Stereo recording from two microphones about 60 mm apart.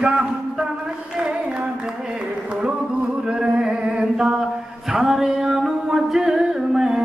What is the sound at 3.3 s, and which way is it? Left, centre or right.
Chant, centre.